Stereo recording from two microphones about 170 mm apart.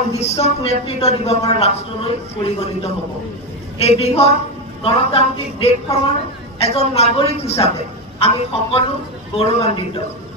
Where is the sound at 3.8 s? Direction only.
35° left (ahead or behind).